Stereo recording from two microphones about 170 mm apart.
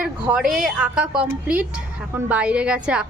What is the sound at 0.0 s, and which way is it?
A woman's voice, 5° right (ahead or behind).